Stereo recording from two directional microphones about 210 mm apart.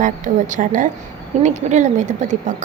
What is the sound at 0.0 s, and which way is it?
A woman's voice, 35° right (ahead or behind).